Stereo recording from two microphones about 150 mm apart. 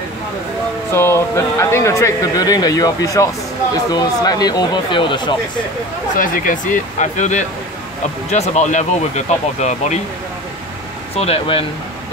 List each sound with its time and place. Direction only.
0.9 s speech: 15° left (ahead or behind)
6.1 s speech: 65° left (ahead or behind)
11.1 s speech: 40° left (ahead or behind)